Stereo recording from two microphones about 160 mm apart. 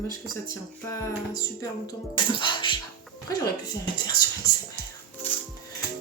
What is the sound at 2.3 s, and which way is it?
Speech, 30° left (ahead or behind).